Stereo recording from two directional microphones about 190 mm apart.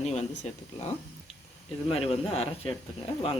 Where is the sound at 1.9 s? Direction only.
30° left (ahead or behind).